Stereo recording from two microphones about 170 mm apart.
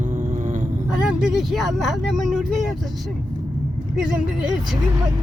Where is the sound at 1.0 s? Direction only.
5° right (ahead or behind).